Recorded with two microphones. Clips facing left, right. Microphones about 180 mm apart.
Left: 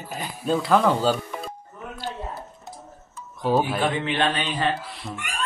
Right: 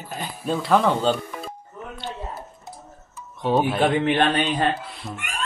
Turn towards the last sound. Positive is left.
turn(degrees=0)  # may be behind; listen again after turning